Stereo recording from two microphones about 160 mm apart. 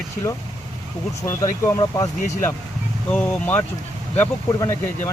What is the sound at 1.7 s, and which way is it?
Speech, 20° left (ahead or behind).